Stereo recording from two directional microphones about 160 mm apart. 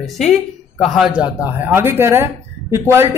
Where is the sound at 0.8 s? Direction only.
Centre (ahead or behind).